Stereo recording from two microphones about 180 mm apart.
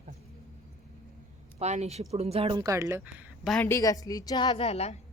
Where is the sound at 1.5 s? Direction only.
35° right (ahead or behind); by 3.1 s 15° right (ahead or behind).